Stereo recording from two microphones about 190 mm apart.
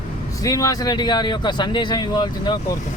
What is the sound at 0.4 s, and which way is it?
A man's voice, 20° left (ahead or behind).